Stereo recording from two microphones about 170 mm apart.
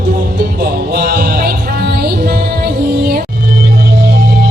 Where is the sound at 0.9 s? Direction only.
65° right (ahead or behind).